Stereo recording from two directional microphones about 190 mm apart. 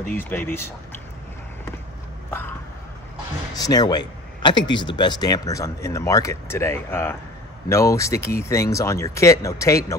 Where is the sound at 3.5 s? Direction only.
20° left (ahead or behind).